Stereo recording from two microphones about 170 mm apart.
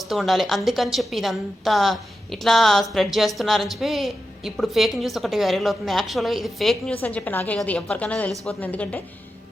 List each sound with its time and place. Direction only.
0.0 s a woman's voice: centre (ahead or behind)